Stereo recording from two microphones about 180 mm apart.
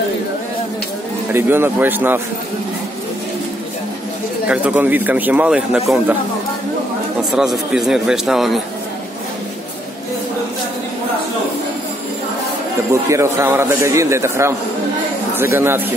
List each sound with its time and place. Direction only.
1.3 s a man's voice: 10° right (ahead or behind)
4.5 s a man's voice: 10° right (ahead or behind)
7.3 s speech: centre (ahead or behind)
13.1 s a man's voice: 15° right (ahead or behind)
15.5 s a man's voice: 10° right (ahead or behind)